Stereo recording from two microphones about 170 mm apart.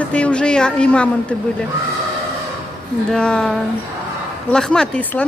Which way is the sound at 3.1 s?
5° left (ahead or behind).